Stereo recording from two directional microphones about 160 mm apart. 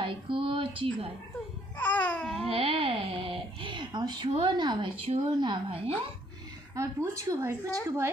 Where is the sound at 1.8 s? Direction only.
10° left (ahead or behind).